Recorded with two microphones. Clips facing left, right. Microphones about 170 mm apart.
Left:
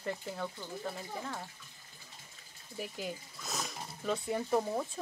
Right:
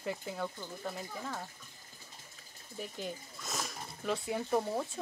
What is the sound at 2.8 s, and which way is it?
Speech, 5° left (ahead or behind).